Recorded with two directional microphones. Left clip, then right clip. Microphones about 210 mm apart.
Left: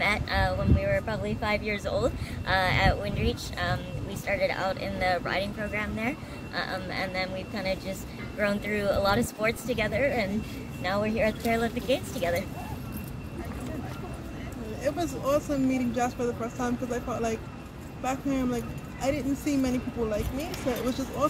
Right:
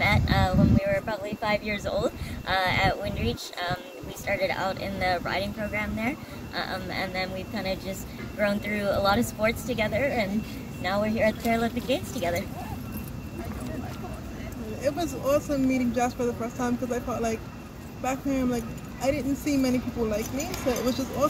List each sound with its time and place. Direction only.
0.0 s speech: 15° left (ahead or behind)
14.8 s speech: 10° right (ahead or behind)